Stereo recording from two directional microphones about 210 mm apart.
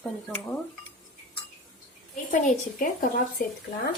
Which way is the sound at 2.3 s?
40° left (ahead or behind).